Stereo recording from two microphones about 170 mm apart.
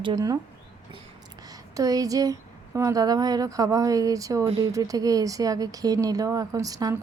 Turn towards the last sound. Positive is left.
turn(degrees=-20)  # may be behind; listen again after turning